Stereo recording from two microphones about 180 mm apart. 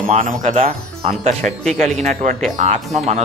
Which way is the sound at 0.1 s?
45° right (ahead or behind).